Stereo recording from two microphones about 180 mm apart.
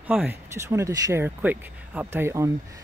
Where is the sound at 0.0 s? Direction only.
10° right (ahead or behind).